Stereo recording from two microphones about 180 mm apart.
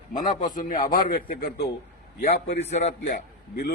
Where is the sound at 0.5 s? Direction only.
50° left (ahead or behind).